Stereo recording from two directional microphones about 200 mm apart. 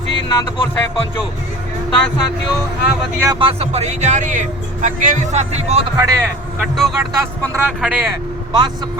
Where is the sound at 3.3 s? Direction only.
30° right (ahead or behind).